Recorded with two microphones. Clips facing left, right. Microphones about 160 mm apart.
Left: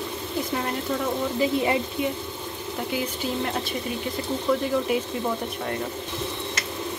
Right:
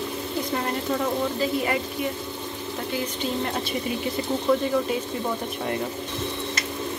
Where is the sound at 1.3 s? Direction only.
20° left (ahead or behind).